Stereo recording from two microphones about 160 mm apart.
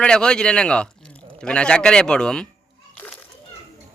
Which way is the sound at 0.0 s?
5° left (ahead or behind).